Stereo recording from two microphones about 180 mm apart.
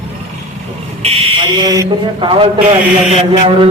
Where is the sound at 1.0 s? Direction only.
35° right (ahead or behind).